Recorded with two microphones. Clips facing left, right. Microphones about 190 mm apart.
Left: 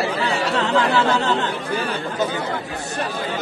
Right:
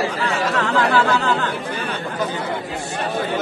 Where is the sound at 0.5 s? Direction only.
25° left (ahead or behind).